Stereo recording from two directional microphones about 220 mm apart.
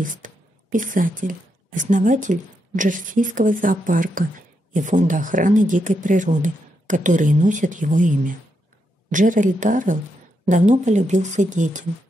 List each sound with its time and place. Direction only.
0.0 s speech: 35° right (ahead or behind)
9.1 s speech: 35° right (ahead or behind)